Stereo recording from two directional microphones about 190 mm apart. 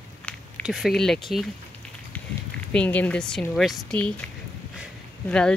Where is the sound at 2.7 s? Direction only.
5° left (ahead or behind).